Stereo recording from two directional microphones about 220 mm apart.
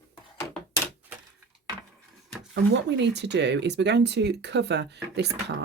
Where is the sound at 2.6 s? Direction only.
50° right (ahead or behind).